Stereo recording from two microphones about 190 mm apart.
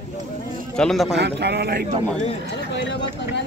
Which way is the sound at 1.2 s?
60° right (ahead or behind).